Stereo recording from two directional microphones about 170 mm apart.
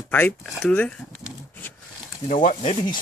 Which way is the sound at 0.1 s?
10° left (ahead or behind).